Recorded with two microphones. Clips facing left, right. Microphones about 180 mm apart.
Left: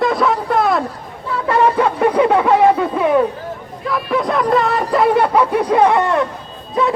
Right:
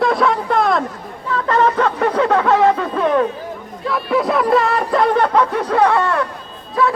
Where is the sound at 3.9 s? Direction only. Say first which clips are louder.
Right 1 dB; centre (ahead or behind); by 6.9 s 20° left (ahead or behind).